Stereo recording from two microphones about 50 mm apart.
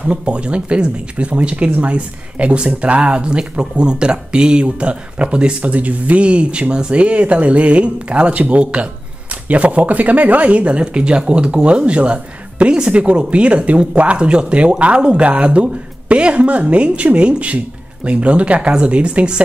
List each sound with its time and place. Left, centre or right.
0.0 s speech: right